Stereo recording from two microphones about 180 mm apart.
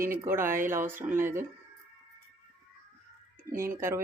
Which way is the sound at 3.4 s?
15° right (ahead or behind).